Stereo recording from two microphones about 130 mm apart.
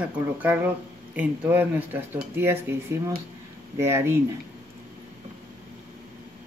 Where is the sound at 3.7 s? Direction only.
20° right (ahead or behind).